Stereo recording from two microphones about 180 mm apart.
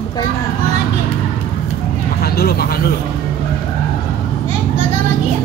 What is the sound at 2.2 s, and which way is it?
Speech, 60° left (ahead or behind).